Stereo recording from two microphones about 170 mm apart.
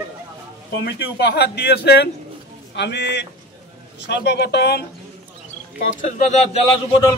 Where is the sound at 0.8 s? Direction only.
70° left (ahead or behind).